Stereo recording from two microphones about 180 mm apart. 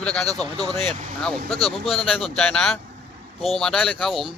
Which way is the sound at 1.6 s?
Centre (ahead or behind).